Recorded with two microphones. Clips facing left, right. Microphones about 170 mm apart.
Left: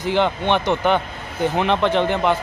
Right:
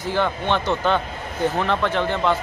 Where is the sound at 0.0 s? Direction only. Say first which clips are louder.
Left 3 dB; 20° left (ahead or behind).